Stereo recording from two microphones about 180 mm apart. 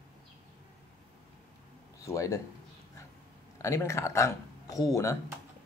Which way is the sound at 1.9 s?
15° left (ahead or behind).